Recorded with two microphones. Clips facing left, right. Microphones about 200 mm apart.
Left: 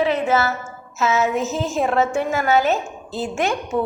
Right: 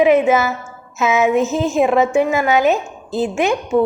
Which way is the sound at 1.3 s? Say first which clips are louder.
Right 6 dB; 40° left (ahead or behind).